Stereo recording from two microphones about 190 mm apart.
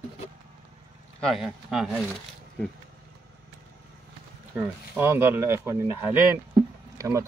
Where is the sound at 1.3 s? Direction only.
5° right (ahead or behind).